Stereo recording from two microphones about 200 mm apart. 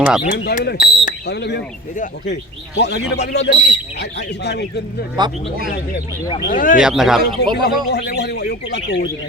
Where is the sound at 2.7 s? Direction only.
60° left (ahead or behind).